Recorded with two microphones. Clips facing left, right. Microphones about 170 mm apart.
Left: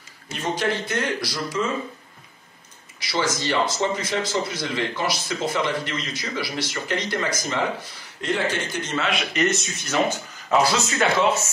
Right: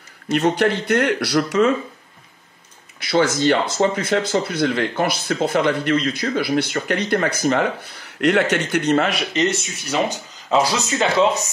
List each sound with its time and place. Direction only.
0.3 s speech: 65° right (ahead or behind)
3.0 s speech: 60° right (ahead or behind)
9.5 s speech: 10° right (ahead or behind)